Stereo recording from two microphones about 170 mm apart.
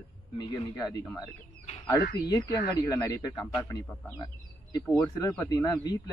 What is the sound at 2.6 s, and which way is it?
Speech, 20° left (ahead or behind).